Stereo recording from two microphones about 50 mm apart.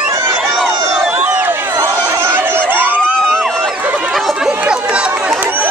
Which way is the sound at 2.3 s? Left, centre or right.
Right.